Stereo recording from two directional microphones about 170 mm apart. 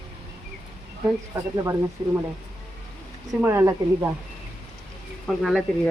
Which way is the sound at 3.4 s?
15° right (ahead or behind).